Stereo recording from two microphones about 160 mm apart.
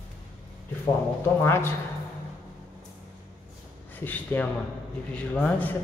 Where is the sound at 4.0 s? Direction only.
10° left (ahead or behind).